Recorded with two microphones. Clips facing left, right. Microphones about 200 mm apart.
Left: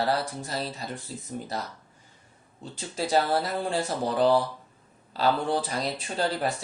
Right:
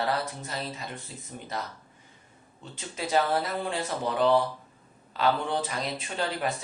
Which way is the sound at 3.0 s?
35° left (ahead or behind).